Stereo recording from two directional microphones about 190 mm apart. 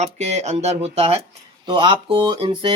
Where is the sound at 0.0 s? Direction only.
35° right (ahead or behind).